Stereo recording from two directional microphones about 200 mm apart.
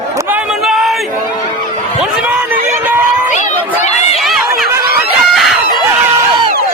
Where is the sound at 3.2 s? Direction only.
40° left (ahead or behind).